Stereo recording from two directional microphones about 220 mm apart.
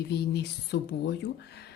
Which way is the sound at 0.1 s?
50° left (ahead or behind).